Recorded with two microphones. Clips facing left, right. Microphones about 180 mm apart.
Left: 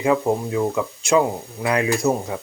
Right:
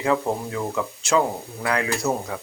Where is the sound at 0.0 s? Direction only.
15° left (ahead or behind).